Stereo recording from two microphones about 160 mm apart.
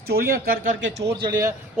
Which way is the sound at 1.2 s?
25° right (ahead or behind).